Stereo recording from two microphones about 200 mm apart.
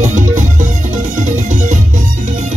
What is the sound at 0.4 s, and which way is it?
Music, 40° right (ahead or behind).